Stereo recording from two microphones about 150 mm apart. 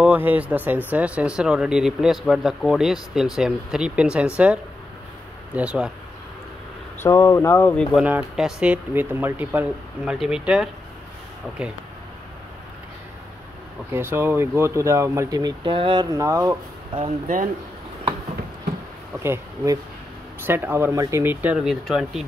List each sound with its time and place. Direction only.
0.0 s speech: 10° right (ahead or behind)
5.5 s speech: 10° right (ahead or behind)
7.0 s speech: 20° left (ahead or behind)
7.7 s speech: 5° left (ahead or behind)
8.0 s speech: 10° right (ahead or behind)
13.9 s speech: 15° right (ahead or behind)
16.9 s speech: 35° right (ahead or behind)
19.1 s speech: 15° right (ahead or behind)